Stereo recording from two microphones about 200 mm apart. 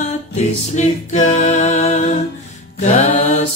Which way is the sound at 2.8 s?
35° left (ahead or behind).